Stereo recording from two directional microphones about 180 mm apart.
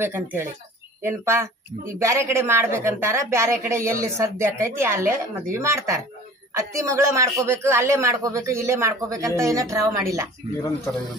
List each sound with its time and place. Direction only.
0.0 s speech: 10° right (ahead or behind)